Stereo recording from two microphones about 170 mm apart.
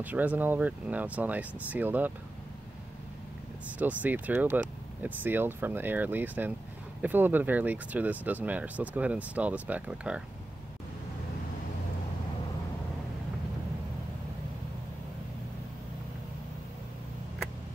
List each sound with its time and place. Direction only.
0.0 s speech: 10° right (ahead or behind)
3.7 s speech: 10° right (ahead or behind)